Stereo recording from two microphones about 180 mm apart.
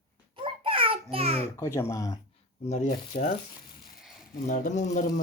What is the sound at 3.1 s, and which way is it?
Speech, 50° left (ahead or behind).